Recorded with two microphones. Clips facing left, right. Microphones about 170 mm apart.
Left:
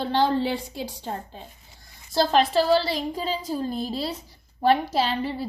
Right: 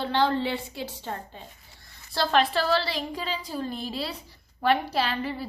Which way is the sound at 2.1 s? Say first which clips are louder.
Left 4 dB; 40° left (ahead or behind).